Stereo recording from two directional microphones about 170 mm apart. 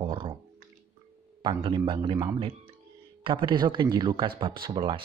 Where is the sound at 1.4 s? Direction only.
25° right (ahead or behind).